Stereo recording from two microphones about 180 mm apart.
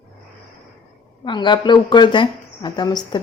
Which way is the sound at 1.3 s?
25° left (ahead or behind).